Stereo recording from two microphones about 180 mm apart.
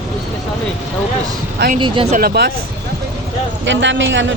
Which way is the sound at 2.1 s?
60° right (ahead or behind).